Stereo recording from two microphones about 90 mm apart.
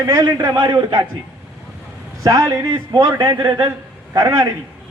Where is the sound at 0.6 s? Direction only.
55° right (ahead or behind).